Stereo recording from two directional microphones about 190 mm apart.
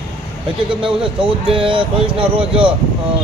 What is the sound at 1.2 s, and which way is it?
A man's voice, 25° right (ahead or behind).